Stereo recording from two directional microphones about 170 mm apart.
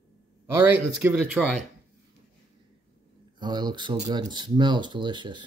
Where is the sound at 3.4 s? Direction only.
25° right (ahead or behind).